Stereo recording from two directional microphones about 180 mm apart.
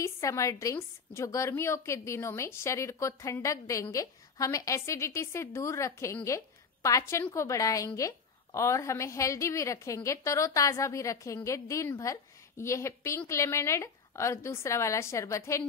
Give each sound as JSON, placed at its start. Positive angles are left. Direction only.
{"t": 0.0, "sound": "a woman's voice", "side_deg": 15}